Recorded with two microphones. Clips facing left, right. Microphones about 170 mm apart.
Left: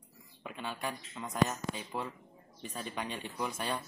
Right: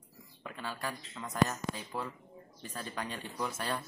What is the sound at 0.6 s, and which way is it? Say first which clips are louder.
Speech: left 1 dB; 20° left (ahead or behind).